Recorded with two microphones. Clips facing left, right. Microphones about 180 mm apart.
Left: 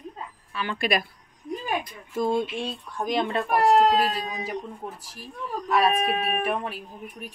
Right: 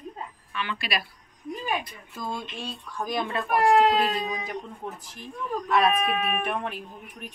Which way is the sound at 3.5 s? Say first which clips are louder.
Left 1 dB; 40° left (ahead or behind).